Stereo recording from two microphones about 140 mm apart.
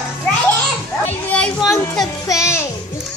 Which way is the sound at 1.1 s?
10° left (ahead or behind).